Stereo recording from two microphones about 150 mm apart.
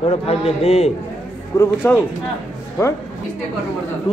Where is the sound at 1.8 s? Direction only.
15° left (ahead or behind).